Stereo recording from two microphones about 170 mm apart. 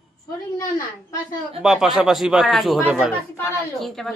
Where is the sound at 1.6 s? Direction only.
5° right (ahead or behind).